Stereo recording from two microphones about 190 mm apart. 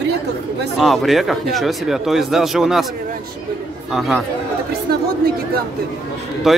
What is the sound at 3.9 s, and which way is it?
Speech, centre (ahead or behind).